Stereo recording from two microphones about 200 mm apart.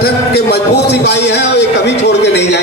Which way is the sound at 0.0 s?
55° left (ahead or behind).